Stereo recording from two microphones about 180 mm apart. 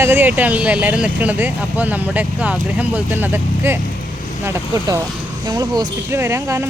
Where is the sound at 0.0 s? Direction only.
10° right (ahead or behind).